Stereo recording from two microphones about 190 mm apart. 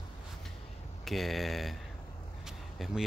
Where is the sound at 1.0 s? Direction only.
Centre (ahead or behind).